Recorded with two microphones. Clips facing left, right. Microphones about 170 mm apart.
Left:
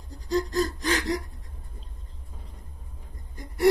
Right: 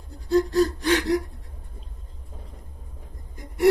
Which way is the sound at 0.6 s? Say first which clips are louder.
Right 5 dB; 5° right (ahead or behind).